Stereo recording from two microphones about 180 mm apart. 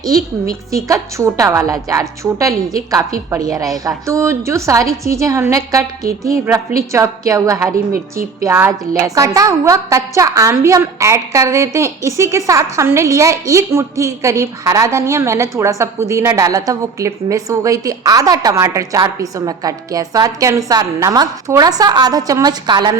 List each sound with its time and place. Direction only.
0.0 s a woman's voice: 20° right (ahead or behind)